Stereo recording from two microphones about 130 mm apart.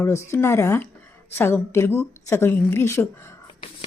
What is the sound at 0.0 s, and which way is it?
A woman's voice, 20° left (ahead or behind).